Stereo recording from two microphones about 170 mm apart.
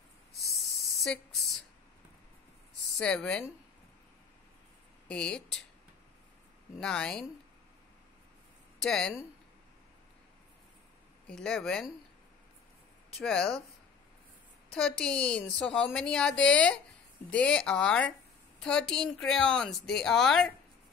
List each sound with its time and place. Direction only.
1.0 s a woman's voice: centre (ahead or behind)
3.0 s a woman's voice: 5° left (ahead or behind)
5.0 s a woman's voice: 5° left (ahead or behind)
6.8 s a woman's voice: 5° left (ahead or behind)
8.8 s a woman's voice: 5° left (ahead or behind)
11.2 s a woman's voice: 5° left (ahead or behind)
13.2 s a woman's voice: 5° left (ahead or behind)
14.7 s a woman's voice: 5° left (ahead or behind)